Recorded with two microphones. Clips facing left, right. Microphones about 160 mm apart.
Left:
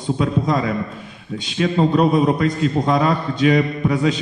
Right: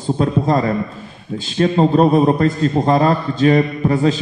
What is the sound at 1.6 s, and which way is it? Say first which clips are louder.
A man's voice: right 3 dB; 40° right (ahead or behind).